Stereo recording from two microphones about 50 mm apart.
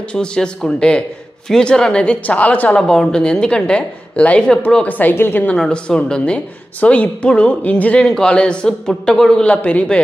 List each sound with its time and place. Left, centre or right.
0.1 s a woman's voice: centre
2.7 s a woman's voice: centre
4.8 s a woman's voice: left
5.7 s a woman's voice: centre
9.4 s a woman's voice: left